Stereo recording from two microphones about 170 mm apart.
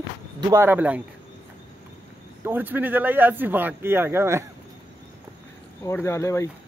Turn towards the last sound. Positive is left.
turn(degrees=15)  # may be behind; listen again after turning